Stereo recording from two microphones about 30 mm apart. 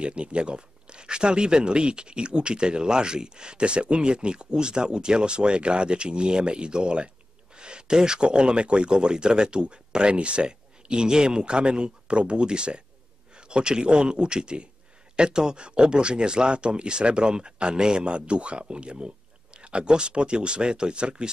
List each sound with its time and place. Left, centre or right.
0.0 s speech: right